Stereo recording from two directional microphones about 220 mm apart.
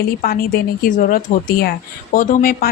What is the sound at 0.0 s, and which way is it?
A woman's voice, 40° left (ahead or behind).